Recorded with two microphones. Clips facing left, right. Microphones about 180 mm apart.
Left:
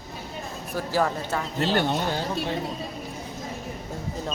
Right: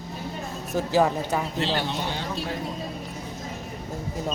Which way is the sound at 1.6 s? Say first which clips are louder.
Left 7 dB; 50° left (ahead or behind).